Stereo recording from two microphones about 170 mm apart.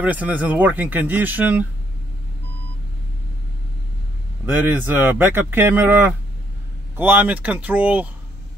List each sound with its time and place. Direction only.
0.0 s speech: 10° right (ahead or behind)
4.5 s speech: 10° right (ahead or behind)